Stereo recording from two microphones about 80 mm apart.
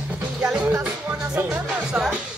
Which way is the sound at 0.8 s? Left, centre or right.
Centre.